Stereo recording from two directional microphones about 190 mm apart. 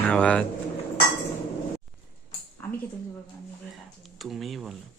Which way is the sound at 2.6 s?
10° left (ahead or behind).